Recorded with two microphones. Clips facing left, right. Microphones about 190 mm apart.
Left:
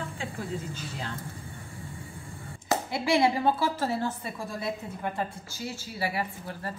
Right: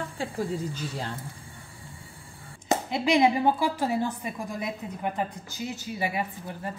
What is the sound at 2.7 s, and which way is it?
A woman's voice, 20° right (ahead or behind).